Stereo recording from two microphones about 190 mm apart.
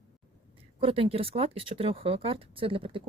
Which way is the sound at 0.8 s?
30° right (ahead or behind).